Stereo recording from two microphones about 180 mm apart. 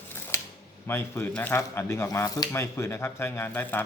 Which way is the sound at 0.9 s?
15° left (ahead or behind).